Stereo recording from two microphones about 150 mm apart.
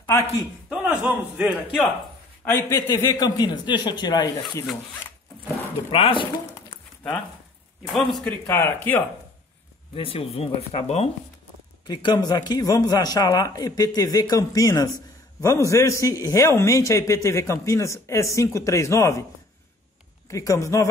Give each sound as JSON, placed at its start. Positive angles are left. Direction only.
{"t": 0.2, "sound": "a man's voice", "side_deg": -5}
{"t": 2.4, "sound": "a man's voice", "side_deg": 20}
{"t": 5.9, "sound": "speech", "side_deg": 35}
{"t": 7.8, "sound": "a man's voice", "side_deg": 0}
{"t": 8.5, "sound": "speech", "side_deg": 15}
{"t": 9.9, "sound": "speech", "side_deg": 40}
{"t": 11.9, "sound": "a man's voice", "side_deg": 30}
{"t": 20.2, "sound": "a man's voice", "side_deg": 20}